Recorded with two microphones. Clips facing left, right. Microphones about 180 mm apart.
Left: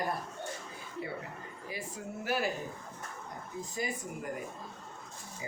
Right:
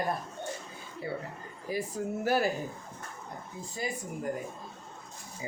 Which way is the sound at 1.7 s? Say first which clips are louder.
Right 9 dB; 40° right (ahead or behind).